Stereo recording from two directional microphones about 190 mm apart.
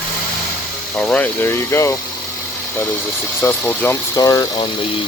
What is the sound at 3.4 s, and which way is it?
Speech, 10° left (ahead or behind).